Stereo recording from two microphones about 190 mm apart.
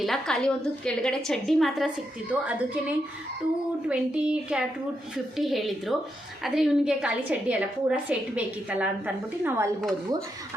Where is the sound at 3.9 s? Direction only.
5° right (ahead or behind).